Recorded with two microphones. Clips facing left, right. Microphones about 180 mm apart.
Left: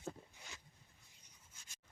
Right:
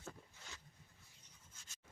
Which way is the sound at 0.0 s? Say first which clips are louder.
Left 5 dB; 15° left (ahead or behind).